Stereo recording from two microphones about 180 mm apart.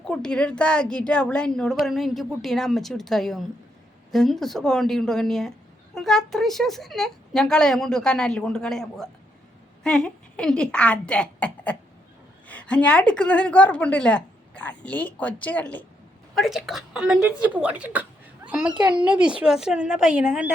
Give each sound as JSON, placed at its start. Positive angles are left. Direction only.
{"t": 0.0, "sound": "a woman's voice", "side_deg": 5}
{"t": 18.7, "sound": "a child's voice", "side_deg": -25}
{"t": 19.0, "sound": "speech", "side_deg": -5}